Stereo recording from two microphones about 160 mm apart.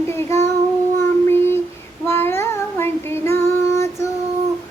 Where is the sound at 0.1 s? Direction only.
15° left (ahead or behind).